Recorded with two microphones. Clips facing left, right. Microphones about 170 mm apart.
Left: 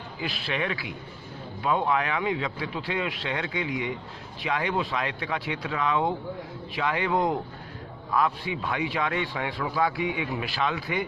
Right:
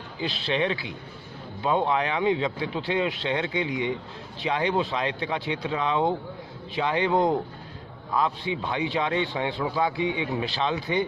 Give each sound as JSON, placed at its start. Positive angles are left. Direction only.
{"t": 0.2, "sound": "a man's voice", "side_deg": -30}